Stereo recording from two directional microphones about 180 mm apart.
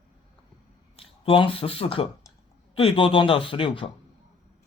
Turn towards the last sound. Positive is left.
turn(degrees=30)  # may be behind; listen again after turning